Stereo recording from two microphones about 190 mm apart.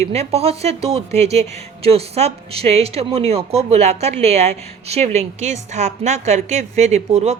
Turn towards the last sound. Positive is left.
turn(degrees=-35)  # may be behind; listen again after turning